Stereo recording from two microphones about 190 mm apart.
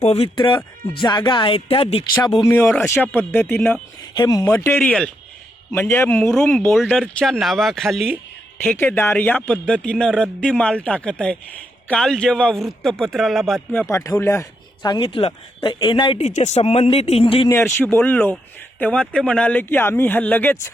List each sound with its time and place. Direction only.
0.0 s a man's voice: 30° left (ahead or behind)
17.5 s speech: 10° left (ahead or behind)